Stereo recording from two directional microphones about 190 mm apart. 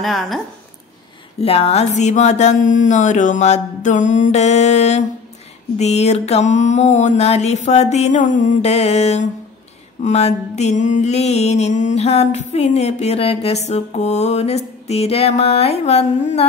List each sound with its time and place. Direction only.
0.0 s speech: centre (ahead or behind)
1.4 s mantra: 30° left (ahead or behind)